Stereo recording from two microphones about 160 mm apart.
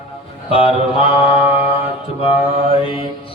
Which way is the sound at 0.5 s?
35° left (ahead or behind).